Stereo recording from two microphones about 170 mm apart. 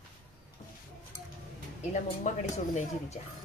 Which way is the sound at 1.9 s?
45° left (ahead or behind).